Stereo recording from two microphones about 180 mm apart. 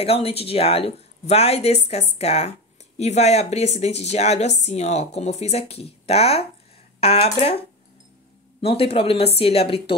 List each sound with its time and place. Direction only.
0.0 s a woman's voice: 35° left (ahead or behind)